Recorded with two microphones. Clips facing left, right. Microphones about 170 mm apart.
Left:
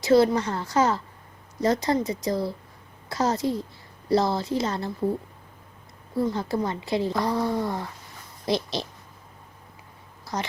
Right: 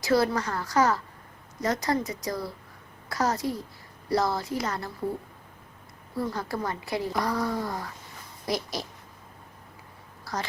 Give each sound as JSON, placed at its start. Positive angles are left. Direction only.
{"t": 0.0, "sound": "a woman's voice", "side_deg": 25}
{"t": 6.1, "sound": "a woman's voice", "side_deg": 25}
{"t": 10.3, "sound": "a woman's voice", "side_deg": 20}